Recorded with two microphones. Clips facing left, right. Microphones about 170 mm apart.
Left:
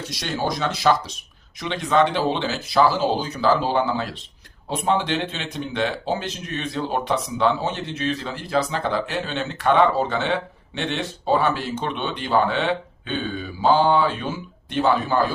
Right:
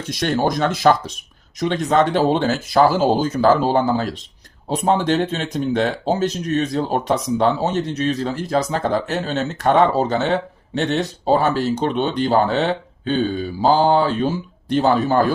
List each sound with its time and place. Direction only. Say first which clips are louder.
0.1 s speech: right 7 dB; 50° right (ahead or behind)